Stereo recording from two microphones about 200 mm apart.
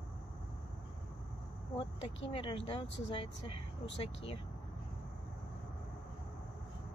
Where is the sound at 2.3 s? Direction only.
25° left (ahead or behind).